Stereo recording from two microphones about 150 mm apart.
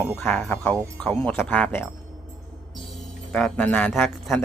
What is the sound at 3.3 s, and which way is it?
Speech, 5° left (ahead or behind).